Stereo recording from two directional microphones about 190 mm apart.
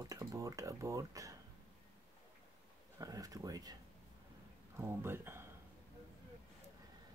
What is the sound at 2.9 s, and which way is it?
Speech, 20° right (ahead or behind).